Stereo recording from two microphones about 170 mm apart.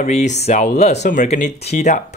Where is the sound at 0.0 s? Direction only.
45° left (ahead or behind).